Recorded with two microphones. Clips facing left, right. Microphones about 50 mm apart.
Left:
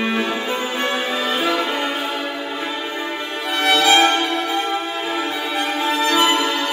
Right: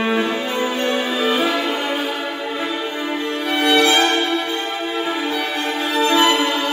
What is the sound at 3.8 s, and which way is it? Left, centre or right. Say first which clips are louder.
Violin: left 2 dB; left.